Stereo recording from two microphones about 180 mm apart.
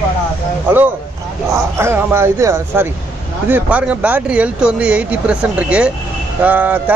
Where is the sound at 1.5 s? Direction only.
15° right (ahead or behind).